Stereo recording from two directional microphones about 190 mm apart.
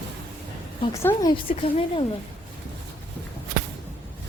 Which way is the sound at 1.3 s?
30° left (ahead or behind).